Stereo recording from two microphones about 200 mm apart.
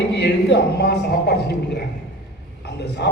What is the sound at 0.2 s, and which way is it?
A man's voice, 55° left (ahead or behind).